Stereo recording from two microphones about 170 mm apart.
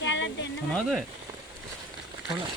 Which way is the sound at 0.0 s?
90° left.